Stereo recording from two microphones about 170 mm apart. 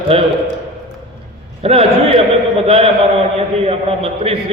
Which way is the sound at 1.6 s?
35° right (ahead or behind).